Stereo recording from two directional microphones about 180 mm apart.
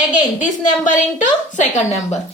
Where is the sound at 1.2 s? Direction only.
45° left (ahead or behind).